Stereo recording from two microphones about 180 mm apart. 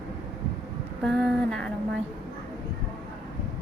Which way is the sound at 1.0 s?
5° left (ahead or behind).